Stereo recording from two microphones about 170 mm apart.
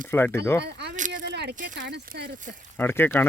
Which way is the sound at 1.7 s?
70° right (ahead or behind).